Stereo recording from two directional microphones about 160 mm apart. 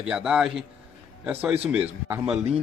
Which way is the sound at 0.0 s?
5° right (ahead or behind).